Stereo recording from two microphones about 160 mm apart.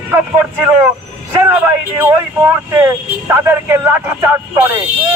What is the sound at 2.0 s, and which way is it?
Speech, 15° right (ahead or behind).